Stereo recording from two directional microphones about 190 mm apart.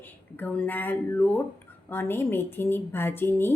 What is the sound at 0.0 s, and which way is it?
A woman's voice, 10° left (ahead or behind).